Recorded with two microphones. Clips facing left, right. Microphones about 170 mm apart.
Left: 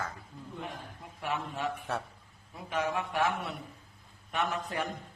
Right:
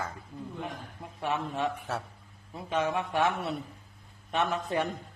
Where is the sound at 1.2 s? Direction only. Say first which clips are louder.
Right 4 dB; 20° right (ahead or behind).